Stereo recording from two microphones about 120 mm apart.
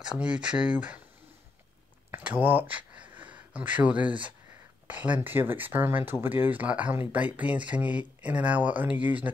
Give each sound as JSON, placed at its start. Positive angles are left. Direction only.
{"t": 0.1, "sound": "speech", "side_deg": -10}
{"t": 2.0, "sound": "a sound", "side_deg": -15}
{"t": 3.5, "sound": "speech", "side_deg": -10}